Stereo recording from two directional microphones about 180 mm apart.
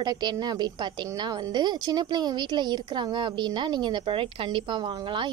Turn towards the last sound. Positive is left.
turn(degrees=-25)  # may be behind; listen again after turning